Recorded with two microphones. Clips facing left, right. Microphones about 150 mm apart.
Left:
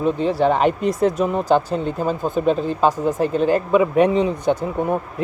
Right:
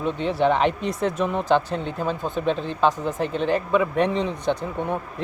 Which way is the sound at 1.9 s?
40° left (ahead or behind).